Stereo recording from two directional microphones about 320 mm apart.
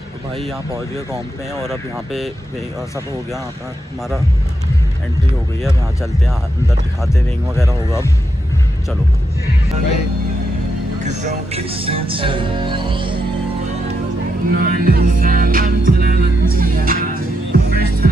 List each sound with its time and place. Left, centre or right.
11.5 s music: centre
14.5 s music: right